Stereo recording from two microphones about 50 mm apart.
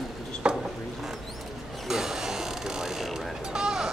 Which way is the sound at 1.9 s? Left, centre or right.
Centre.